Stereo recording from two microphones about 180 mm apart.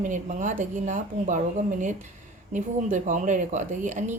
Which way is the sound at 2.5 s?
45° right (ahead or behind).